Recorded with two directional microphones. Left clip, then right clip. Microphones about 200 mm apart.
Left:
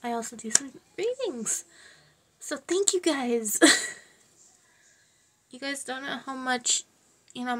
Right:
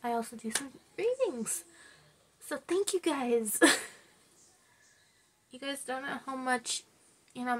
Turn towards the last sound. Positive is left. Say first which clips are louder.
# left 2 dB
turn(degrees=20)  # may be behind; listen again after turning